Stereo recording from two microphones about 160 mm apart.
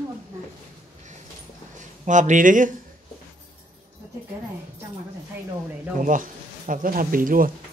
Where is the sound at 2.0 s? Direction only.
50° right (ahead or behind).